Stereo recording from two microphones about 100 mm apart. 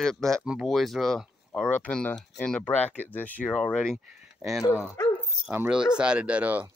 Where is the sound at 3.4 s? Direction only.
5° left (ahead or behind).